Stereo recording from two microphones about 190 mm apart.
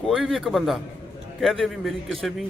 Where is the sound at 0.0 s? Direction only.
Centre (ahead or behind).